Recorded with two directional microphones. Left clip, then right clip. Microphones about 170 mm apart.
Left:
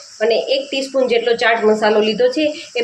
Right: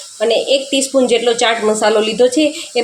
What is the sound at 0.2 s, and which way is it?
Speech, 40° right (ahead or behind).